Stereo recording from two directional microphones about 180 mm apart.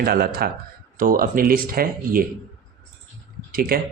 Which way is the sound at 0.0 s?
60° right (ahead or behind).